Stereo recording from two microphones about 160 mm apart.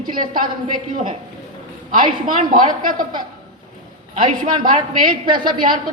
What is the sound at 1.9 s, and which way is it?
A man's voice, 60° right (ahead or behind).